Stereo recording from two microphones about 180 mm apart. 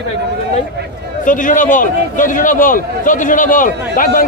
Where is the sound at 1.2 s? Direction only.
45° left (ahead or behind).